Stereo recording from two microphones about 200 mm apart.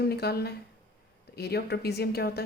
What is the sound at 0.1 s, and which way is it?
Speech, 55° left (ahead or behind).